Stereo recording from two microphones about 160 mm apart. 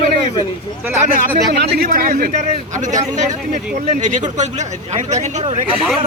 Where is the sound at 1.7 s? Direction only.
65° right (ahead or behind); by 5.7 s 45° right (ahead or behind).